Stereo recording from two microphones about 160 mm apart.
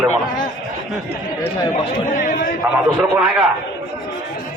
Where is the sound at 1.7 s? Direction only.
60° left (ahead or behind).